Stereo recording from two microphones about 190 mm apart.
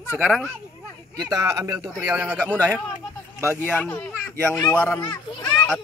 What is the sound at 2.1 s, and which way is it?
Speech, 10° right (ahead or behind).